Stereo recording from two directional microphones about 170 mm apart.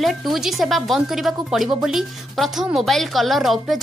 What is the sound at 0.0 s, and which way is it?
A woman's voice, centre (ahead or behind).